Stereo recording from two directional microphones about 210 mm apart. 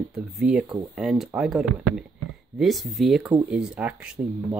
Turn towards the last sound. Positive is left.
turn(degrees=-5)  # may be behind; listen again after turning